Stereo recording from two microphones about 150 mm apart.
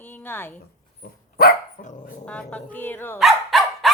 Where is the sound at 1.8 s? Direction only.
55° left (ahead or behind).